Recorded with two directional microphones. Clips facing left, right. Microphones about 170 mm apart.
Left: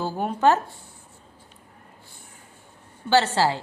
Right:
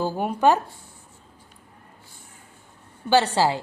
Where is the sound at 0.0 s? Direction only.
10° right (ahead or behind).